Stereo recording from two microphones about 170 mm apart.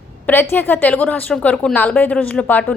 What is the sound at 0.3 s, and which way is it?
A woman's voice, 10° left (ahead or behind).